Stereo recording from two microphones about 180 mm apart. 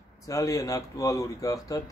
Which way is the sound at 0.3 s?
20° left (ahead or behind).